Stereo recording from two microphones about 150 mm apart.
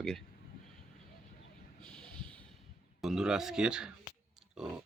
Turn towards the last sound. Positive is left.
turn(degrees=-5)  # may be behind; listen again after turning